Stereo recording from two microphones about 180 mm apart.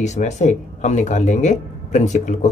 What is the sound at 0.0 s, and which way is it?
Speech, 40° left (ahead or behind).